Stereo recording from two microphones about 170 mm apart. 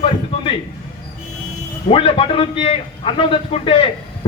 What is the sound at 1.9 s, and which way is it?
A man's voice, 35° left (ahead or behind).